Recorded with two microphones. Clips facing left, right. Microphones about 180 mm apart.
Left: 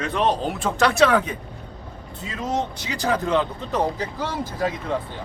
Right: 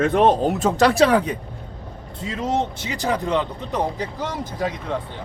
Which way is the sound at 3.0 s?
15° right (ahead or behind).